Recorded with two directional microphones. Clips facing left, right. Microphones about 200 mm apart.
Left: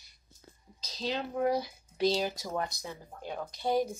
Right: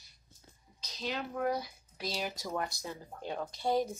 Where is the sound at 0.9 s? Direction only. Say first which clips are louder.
Left 3 dB; 35° left (ahead or behind).